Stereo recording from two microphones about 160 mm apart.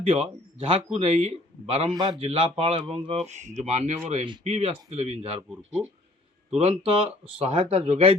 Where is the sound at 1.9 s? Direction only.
25° right (ahead or behind).